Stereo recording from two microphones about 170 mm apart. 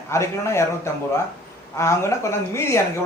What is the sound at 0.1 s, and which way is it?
Speech, 15° left (ahead or behind).